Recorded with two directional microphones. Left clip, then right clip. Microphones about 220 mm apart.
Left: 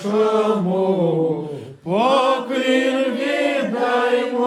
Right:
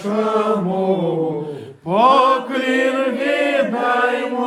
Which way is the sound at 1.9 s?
15° right (ahead or behind).